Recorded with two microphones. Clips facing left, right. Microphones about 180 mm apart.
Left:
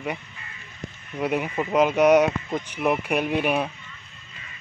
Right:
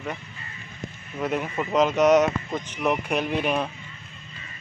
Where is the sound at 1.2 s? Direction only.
5° left (ahead or behind).